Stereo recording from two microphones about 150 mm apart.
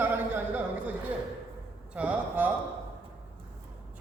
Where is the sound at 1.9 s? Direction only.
10° right (ahead or behind).